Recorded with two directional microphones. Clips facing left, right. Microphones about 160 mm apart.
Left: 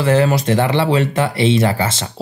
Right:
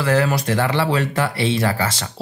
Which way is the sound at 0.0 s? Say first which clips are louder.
Left 4 dB; 25° left (ahead or behind).